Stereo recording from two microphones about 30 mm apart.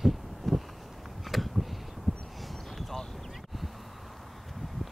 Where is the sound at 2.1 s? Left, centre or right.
Right.